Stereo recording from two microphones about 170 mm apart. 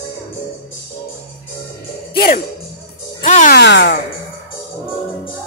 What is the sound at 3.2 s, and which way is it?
Speech, 45° left (ahead or behind).